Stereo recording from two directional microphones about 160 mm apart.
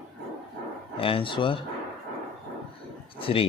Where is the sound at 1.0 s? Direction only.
35° left (ahead or behind).